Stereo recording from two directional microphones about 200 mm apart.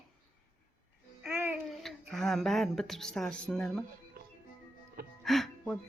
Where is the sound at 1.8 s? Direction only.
Centre (ahead or behind).